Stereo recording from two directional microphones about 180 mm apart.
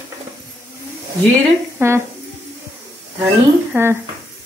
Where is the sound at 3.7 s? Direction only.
10° right (ahead or behind).